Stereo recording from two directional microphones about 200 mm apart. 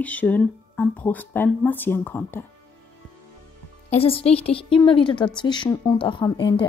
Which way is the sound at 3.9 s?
30° left (ahead or behind).